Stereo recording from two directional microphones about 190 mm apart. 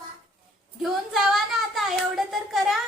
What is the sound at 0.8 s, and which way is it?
Speech, centre (ahead or behind).